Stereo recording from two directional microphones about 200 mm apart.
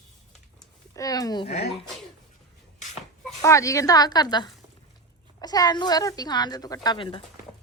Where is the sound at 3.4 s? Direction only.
15° left (ahead or behind).